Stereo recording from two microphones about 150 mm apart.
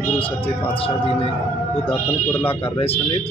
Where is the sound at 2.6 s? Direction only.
40° left (ahead or behind).